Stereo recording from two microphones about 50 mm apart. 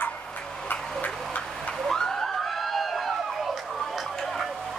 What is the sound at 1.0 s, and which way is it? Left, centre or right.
Turkey, left.